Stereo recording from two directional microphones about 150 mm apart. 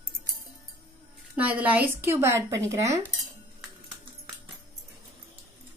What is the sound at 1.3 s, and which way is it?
A woman's voice, 10° right (ahead or behind).